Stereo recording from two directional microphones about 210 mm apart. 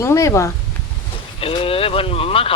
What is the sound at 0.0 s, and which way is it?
Speech, 15° left (ahead or behind).